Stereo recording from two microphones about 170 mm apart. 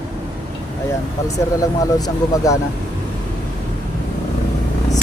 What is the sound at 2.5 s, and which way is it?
Speech, 20° left (ahead or behind).